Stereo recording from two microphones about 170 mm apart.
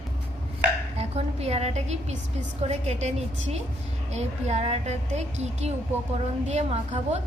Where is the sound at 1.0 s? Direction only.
40° right (ahead or behind).